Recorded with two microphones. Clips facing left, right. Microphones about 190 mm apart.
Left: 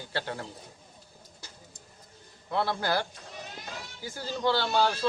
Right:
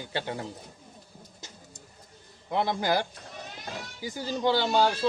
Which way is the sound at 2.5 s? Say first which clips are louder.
Right 2 dB; 15° right (ahead or behind).